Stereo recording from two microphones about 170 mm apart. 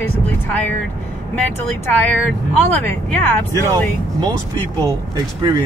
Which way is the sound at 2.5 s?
10° left (ahead or behind).